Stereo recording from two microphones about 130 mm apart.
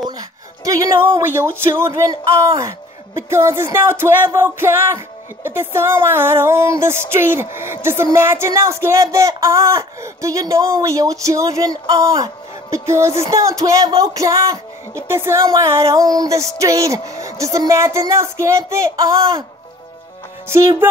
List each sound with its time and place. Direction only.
0.0 s speech: 25° right (ahead or behind)
20.4 s speech: 20° right (ahead or behind)